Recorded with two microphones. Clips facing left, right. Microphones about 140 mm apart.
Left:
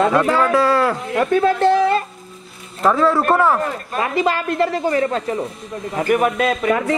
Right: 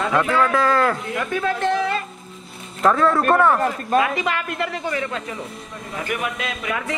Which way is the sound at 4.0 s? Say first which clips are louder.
Left 4 dB; 35° left (ahead or behind).